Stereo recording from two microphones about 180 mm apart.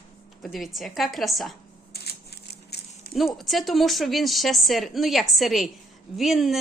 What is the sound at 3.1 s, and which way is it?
A woman's voice, centre (ahead or behind).